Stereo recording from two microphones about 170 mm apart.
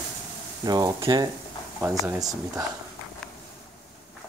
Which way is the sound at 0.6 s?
20° right (ahead or behind).